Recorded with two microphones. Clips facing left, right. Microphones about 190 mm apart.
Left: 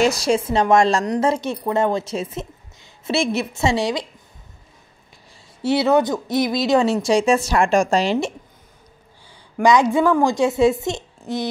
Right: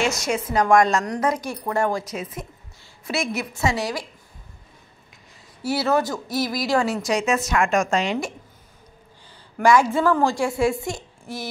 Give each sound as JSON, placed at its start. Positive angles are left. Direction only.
{"t": 0.0, "sound": "a woman's voice", "side_deg": 35}
{"t": 5.6, "sound": "a woman's voice", "side_deg": 20}
{"t": 9.3, "sound": "a woman's voice", "side_deg": 15}